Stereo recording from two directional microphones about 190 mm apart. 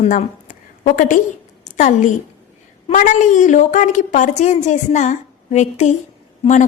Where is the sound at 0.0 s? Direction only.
40° left (ahead or behind).